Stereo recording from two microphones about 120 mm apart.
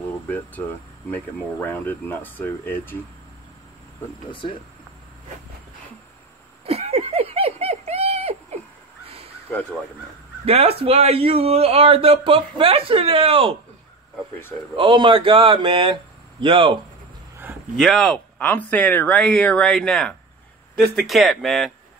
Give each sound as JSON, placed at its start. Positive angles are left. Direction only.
{"t": 1.1, "sound": "speech", "side_deg": 15}
{"t": 4.3, "sound": "speech", "side_deg": 45}
{"t": 6.6, "sound": "a sound", "side_deg": -55}
{"t": 9.5, "sound": "speech", "side_deg": 10}
{"t": 10.4, "sound": "speech", "side_deg": -55}
{"t": 14.8, "sound": "speech", "side_deg": -45}
{"t": 17.7, "sound": "speech", "side_deg": 0}